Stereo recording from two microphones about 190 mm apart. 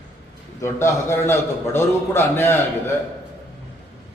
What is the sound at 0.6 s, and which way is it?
A man's voice, 15° left (ahead or behind).